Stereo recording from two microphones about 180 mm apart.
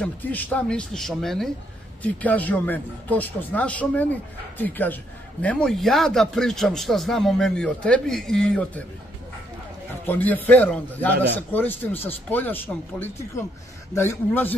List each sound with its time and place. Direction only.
0.0 s a man's voice: 10° left (ahead or behind)
10.0 s speech: 10° left (ahead or behind)